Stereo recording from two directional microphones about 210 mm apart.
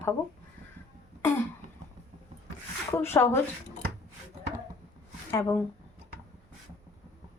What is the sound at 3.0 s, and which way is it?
Speech, 10° left (ahead or behind).